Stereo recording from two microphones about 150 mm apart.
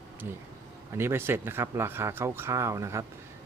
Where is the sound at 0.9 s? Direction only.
15° right (ahead or behind).